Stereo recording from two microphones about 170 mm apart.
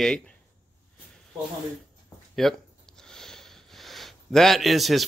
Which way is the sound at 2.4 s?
Centre (ahead or behind).